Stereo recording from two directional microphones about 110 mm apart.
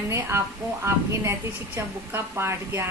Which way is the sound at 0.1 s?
25° right (ahead or behind).